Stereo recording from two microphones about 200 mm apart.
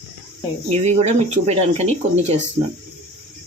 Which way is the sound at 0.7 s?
35° right (ahead or behind).